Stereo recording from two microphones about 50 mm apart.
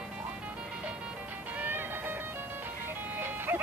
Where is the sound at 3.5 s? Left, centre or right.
Right.